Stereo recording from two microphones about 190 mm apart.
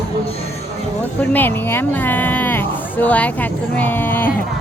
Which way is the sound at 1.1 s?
10° left (ahead or behind).